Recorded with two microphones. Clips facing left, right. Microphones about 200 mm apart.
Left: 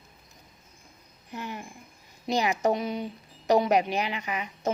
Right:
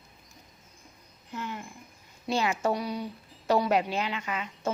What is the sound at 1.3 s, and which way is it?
A woman's voice, 15° left (ahead or behind).